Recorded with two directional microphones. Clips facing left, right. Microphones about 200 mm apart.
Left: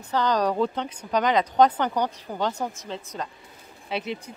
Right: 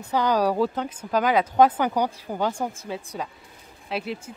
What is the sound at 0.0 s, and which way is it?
Speech, 10° right (ahead or behind).